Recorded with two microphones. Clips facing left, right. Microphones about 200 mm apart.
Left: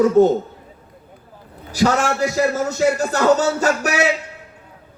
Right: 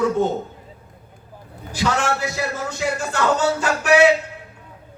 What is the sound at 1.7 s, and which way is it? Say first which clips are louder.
A man's voice: left 4 dB; 40° left (ahead or behind).